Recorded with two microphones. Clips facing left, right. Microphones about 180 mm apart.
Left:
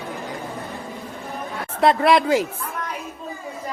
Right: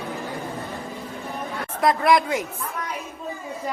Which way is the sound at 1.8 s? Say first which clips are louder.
Left 3 dB; 30° left (ahead or behind).